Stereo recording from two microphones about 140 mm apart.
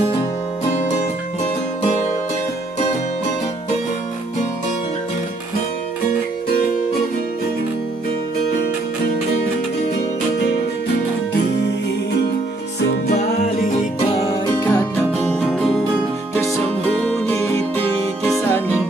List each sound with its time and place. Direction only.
0.7 s music: 55° left (ahead or behind)
13.1 s music: 55° left (ahead or behind)
14.4 s music: 25° left (ahead or behind)
15.3 s music: 5° left (ahead or behind)
16.3 s music: 20° left (ahead or behind)
17.0 s music: 10° left (ahead or behind)